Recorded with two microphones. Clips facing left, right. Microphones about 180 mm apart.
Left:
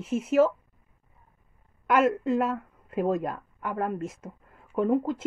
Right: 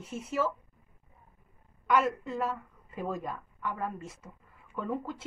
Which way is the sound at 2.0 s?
75° left (ahead or behind).